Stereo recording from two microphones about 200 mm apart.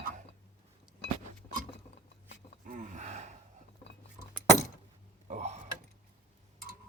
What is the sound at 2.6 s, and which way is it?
Gasp, 40° right (ahead or behind).